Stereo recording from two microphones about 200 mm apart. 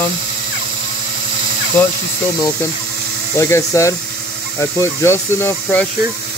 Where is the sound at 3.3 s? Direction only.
15° left (ahead or behind).